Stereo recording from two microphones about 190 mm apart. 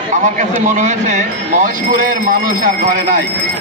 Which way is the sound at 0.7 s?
40° right (ahead or behind).